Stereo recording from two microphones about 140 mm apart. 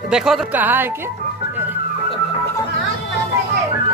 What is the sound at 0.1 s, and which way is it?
Speech, 5° right (ahead or behind).